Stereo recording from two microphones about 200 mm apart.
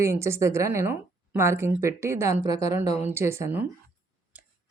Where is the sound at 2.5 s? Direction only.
30° left (ahead or behind).